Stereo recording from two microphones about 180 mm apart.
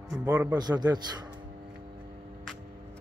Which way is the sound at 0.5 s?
20° right (ahead or behind).